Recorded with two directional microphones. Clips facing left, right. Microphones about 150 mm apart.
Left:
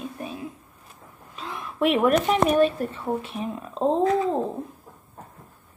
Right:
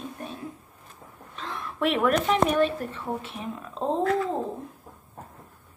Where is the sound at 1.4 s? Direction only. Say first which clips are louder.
Left 3 dB; 15° left (ahead or behind).